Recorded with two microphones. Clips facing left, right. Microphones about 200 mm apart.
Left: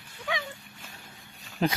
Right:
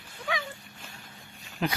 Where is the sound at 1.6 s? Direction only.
35° left (ahead or behind).